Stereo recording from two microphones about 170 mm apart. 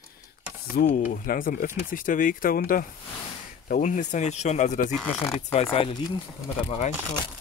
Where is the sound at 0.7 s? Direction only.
50° left (ahead or behind).